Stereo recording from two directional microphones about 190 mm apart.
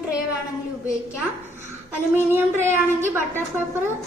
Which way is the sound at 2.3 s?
10° right (ahead or behind).